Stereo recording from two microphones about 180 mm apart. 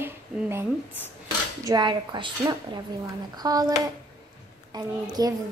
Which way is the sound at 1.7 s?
25° right (ahead or behind).